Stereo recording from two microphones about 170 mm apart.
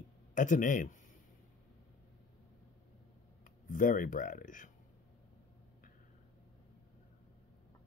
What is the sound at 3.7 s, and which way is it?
Speech, 55° left (ahead or behind).